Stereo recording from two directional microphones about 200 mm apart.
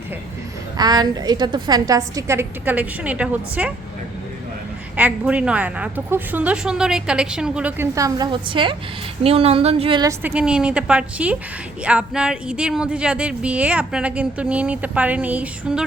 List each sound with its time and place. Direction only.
0.8 s a woman's voice: 20° right (ahead or behind)
4.9 s a woman's voice: 5° right (ahead or behind)